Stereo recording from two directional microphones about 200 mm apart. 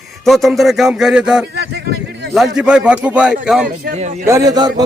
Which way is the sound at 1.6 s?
55° right (ahead or behind).